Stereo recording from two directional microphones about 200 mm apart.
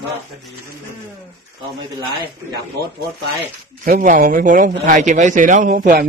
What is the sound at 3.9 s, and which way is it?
A man's voice, 40° right (ahead or behind).